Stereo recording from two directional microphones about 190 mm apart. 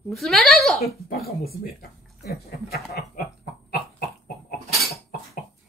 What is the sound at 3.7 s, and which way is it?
Cough, 55° left (ahead or behind).